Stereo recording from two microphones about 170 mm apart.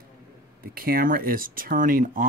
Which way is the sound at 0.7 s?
60° right (ahead or behind).